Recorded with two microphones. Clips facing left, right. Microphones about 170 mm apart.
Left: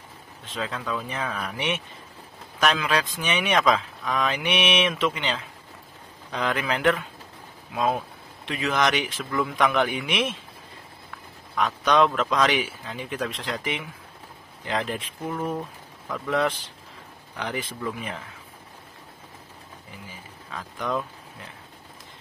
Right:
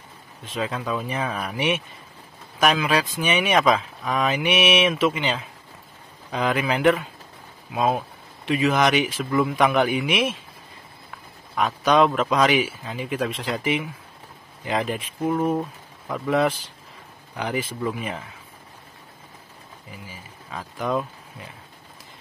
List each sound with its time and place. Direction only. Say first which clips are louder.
0.6 s speech: right 3 dB; 15° right (ahead or behind)
11.5 s speech: right 2 dB; 10° right (ahead or behind)
15.2 s speech: right 7 dB; 25° right (ahead or behind)
16.1 s speech: right 3 dB; 10° right (ahead or behind)
20.5 s speech: right 3 dB; 10° right (ahead or behind)